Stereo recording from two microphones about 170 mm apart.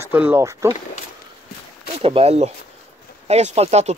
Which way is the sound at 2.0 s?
35° right (ahead or behind).